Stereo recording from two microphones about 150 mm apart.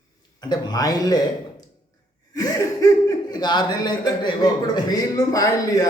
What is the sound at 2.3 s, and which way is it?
Speech, 25° left (ahead or behind).